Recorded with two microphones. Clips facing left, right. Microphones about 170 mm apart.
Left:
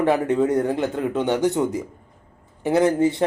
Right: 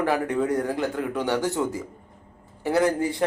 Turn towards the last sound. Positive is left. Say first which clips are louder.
# left 4 dB
turn(degrees=25)  # may be behind; listen again after turning